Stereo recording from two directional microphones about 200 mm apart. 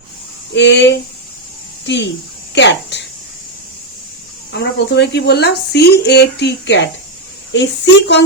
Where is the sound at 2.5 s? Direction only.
60° left (ahead or behind).